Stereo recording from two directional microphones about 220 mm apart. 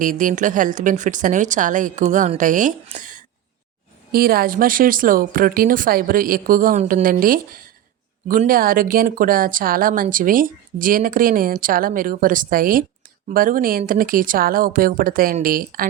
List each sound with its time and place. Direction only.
0.0 s speech: 35° right (ahead or behind)